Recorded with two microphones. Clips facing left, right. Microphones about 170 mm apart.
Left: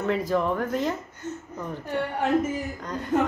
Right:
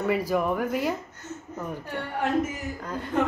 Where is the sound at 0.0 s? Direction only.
10° right (ahead or behind).